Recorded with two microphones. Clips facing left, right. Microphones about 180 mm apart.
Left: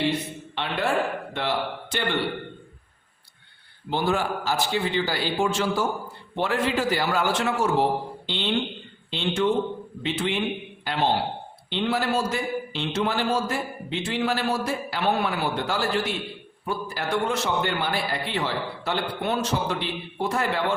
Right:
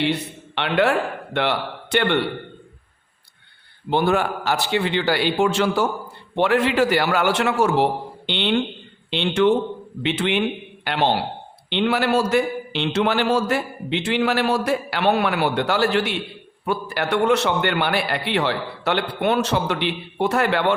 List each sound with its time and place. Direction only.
0.0 s a man's voice: 70° right (ahead or behind)
3.8 s a man's voice: 60° right (ahead or behind)